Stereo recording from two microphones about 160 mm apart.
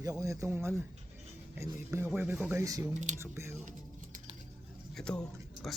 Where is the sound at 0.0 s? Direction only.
20° right (ahead or behind).